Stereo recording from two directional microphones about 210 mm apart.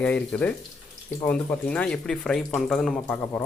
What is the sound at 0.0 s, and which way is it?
Speech, 5° left (ahead or behind).